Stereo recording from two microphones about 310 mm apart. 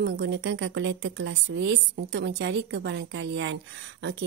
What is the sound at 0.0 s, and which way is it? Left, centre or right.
A woman's voice, right.